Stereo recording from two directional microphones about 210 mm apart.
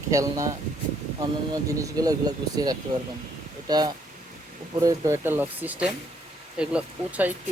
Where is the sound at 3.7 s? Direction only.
20° right (ahead or behind).